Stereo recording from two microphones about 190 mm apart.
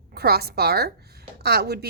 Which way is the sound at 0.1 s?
55° right (ahead or behind).